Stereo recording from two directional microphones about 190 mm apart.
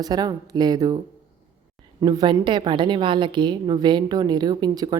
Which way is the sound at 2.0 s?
20° right (ahead or behind).